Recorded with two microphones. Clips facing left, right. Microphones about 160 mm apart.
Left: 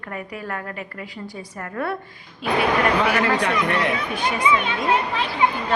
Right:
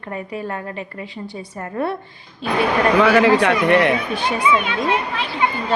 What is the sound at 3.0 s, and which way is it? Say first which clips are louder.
Speech: right 7 dB; 90° right.